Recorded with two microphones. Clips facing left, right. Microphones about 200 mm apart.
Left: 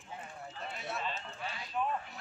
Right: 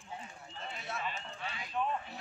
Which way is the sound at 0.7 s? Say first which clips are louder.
Left 2 dB; centre (ahead or behind).